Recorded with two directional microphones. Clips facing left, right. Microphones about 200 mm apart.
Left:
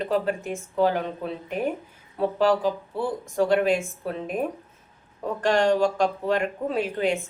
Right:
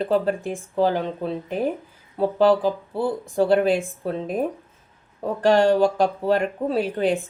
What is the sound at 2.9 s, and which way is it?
Speech, 35° right (ahead or behind).